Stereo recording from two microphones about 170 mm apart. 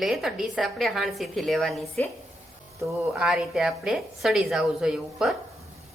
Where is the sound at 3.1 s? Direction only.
5° right (ahead or behind).